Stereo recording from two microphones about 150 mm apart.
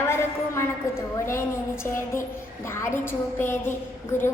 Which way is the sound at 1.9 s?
15° left (ahead or behind).